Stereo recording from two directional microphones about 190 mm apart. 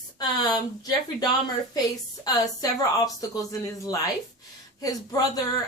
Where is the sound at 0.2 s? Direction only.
20° left (ahead or behind).